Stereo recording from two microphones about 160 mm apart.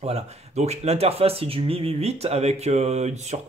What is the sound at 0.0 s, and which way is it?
Speech, 40° right (ahead or behind).